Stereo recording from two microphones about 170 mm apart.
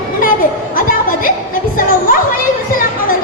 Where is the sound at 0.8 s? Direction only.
55° left (ahead or behind).